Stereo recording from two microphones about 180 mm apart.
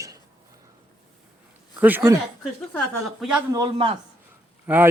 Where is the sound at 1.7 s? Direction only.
10° right (ahead or behind).